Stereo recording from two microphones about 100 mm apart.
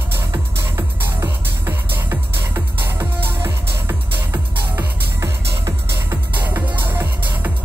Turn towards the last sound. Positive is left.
turn(degrees=-20)  # may be behind; listen again after turning